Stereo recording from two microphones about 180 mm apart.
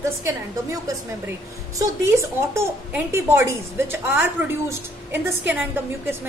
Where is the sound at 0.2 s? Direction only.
15° right (ahead or behind).